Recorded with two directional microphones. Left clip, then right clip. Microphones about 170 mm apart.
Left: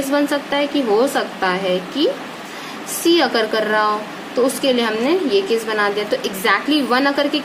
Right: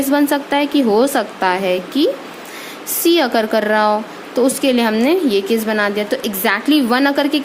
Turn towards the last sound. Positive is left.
turn(degrees=-50)  # may be behind; listen again after turning